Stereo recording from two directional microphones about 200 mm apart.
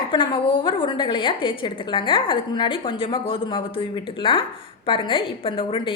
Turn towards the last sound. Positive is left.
turn(degrees=25)  # may be behind; listen again after turning